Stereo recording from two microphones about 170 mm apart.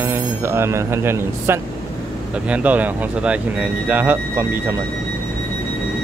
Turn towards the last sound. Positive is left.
turn(degrees=-10)  # may be behind; listen again after turning